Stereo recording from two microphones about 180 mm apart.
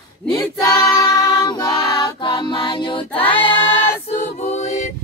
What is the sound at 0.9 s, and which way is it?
Music, 20° left (ahead or behind).